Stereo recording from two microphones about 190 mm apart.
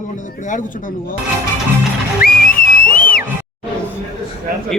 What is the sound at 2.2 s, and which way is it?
Music, 50° left (ahead or behind).